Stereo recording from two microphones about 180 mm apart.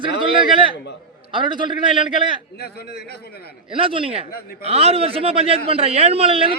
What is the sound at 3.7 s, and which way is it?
Speech, 30° right (ahead or behind).